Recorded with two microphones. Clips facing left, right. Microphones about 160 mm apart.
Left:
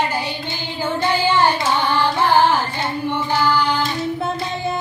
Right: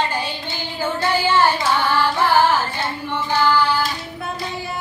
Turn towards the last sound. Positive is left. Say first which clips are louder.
# right 1 dB
turn(degrees=15)  # may be behind; listen again after turning